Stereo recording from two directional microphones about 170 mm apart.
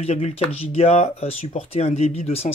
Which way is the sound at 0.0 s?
35° left (ahead or behind).